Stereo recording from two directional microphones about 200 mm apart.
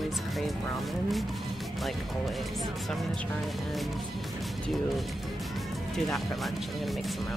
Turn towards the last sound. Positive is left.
turn(degrees=0)  # may be behind; listen again after turning